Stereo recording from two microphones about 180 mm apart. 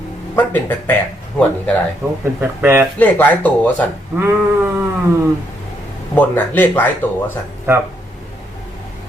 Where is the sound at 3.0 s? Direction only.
10° left (ahead or behind).